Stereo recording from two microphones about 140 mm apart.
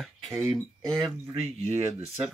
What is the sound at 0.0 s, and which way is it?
Speech, centre (ahead or behind).